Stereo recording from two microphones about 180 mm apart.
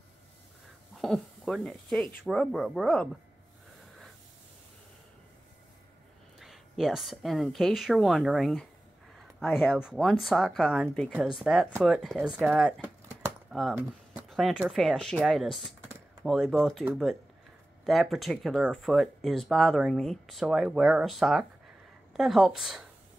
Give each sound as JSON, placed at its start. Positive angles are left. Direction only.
{"t": 0.9, "sound": "speech", "side_deg": 0}
{"t": 6.4, "sound": "speech", "side_deg": 0}